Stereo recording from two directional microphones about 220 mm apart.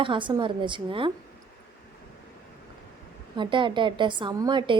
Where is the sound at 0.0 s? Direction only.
20° right (ahead or behind).